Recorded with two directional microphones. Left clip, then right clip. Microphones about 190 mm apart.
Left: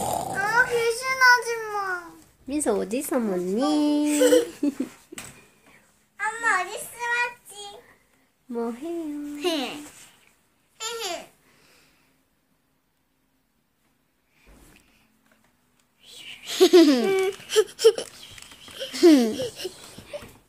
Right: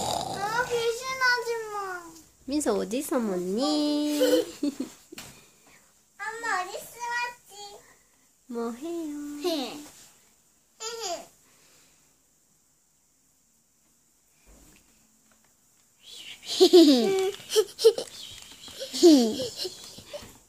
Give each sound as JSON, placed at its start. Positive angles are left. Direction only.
{"t": 0.0, "sound": "a sound", "side_deg": 5}
{"t": 2.4, "sound": "a child's voice", "side_deg": -5}
{"t": 5.7, "sound": "child singing", "side_deg": 0}
{"t": 8.5, "sound": "a child's voice", "side_deg": 5}
{"t": 10.8, "sound": "babbling", "side_deg": 0}
{"t": 16.0, "sound": "a sound", "side_deg": 10}
{"t": 16.4, "sound": "a sound", "side_deg": -25}
{"t": 17.1, "sound": "speech", "side_deg": -10}
{"t": 18.8, "sound": "speech", "side_deg": -5}
{"t": 19.5, "sound": "wheeze", "side_deg": 5}